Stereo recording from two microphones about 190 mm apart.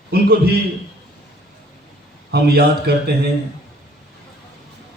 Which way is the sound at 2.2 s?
60° right (ahead or behind).